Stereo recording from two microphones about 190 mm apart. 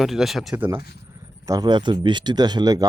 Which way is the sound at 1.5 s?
20° right (ahead or behind).